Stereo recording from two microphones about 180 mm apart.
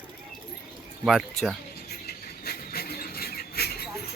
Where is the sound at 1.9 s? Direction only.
60° left (ahead or behind).